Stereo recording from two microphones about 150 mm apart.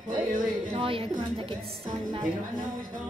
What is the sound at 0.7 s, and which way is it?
Speech, 35° right (ahead or behind).